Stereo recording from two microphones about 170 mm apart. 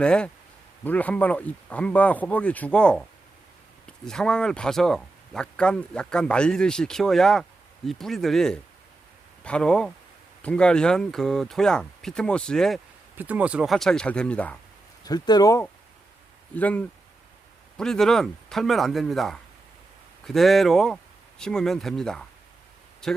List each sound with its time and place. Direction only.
0.0 s speech: 5° left (ahead or behind)
13.1 s speech: 10° right (ahead or behind); by 14.6 s 10° left (ahead or behind)
15.0 s speech: 20° left (ahead or behind)
16.6 s speech: 10° left (ahead or behind)